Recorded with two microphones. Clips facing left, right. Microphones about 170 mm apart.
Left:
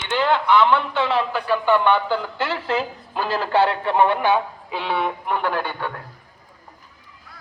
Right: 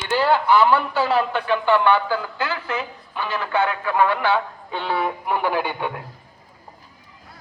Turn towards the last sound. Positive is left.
turn(degrees=-10)  # may be behind; listen again after turning